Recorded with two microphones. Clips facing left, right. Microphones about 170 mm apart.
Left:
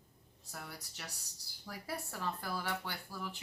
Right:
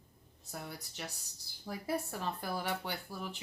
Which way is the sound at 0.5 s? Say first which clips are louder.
Right 4 dB; 20° right (ahead or behind).